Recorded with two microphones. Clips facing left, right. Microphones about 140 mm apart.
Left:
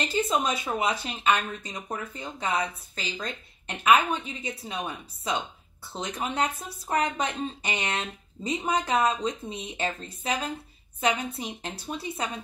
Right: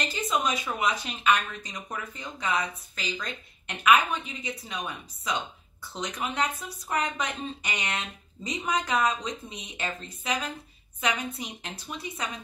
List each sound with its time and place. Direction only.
0.0 s a woman's voice: 30° left (ahead or behind)